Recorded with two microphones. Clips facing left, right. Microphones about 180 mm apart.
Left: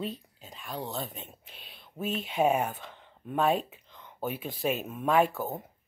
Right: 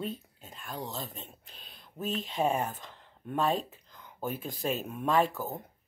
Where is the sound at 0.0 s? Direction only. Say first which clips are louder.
Left 1 dB; centre (ahead or behind).